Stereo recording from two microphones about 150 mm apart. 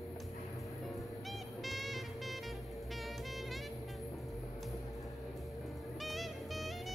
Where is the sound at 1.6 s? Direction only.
Centre (ahead or behind).